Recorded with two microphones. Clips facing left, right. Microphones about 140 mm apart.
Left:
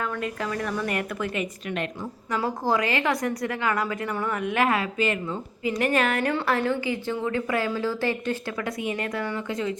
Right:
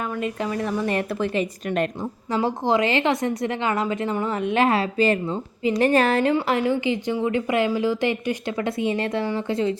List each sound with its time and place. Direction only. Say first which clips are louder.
0.2 s a woman's voice: right 3 dB; 20° right (ahead or behind); by 1.9 s 35° right (ahead or behind)
2.3 s a woman's voice: right 4 dB; 25° right (ahead or behind)
6.2 s a woman's voice: right 4 dB; 15° right (ahead or behind)